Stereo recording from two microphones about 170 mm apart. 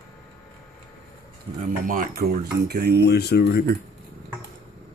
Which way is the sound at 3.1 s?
70° left (ahead or behind).